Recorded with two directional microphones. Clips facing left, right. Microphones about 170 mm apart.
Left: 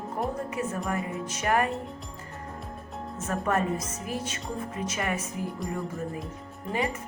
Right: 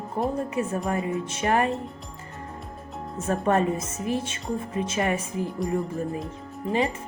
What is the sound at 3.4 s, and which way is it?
A woman's voice, 25° right (ahead or behind).